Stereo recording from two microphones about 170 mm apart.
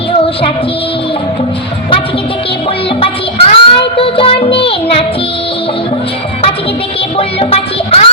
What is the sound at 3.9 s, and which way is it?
Music, 30° left (ahead or behind).